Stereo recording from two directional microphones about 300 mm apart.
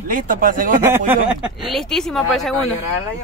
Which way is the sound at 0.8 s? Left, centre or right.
Centre.